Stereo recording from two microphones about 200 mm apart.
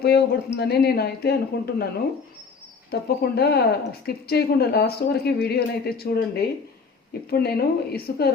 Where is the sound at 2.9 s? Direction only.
50° left (ahead or behind).